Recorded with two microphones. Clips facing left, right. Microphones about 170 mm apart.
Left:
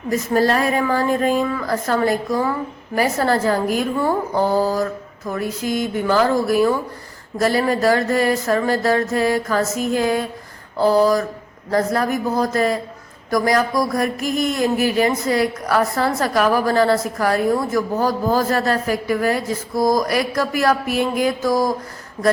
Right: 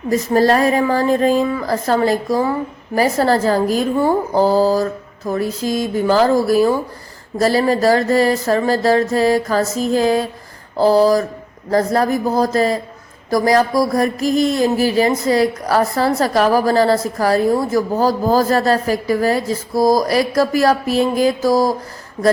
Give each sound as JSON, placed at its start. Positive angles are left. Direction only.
{"t": 0.1, "sound": "a woman's voice", "side_deg": -35}